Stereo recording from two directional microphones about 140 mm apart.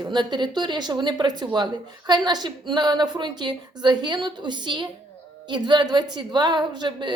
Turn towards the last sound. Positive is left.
turn(degrees=-30)  # may be behind; listen again after turning